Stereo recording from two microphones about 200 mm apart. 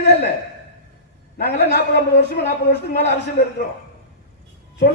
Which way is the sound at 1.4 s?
55° left (ahead or behind).